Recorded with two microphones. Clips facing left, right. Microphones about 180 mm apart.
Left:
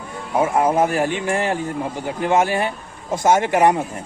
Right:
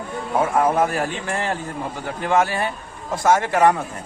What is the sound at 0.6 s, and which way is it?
A man's voice, 20° left (ahead or behind).